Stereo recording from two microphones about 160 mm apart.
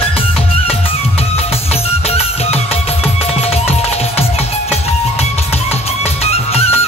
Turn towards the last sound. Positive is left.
turn(degrees=40)  # may be behind; listen again after turning